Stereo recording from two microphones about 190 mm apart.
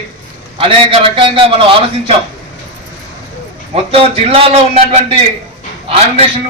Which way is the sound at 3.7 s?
30° right (ahead or behind).